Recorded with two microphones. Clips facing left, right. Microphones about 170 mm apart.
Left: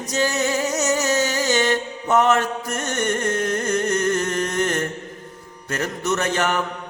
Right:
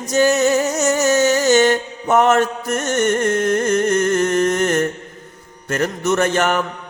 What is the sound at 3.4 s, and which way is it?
Music, 50° right (ahead or behind).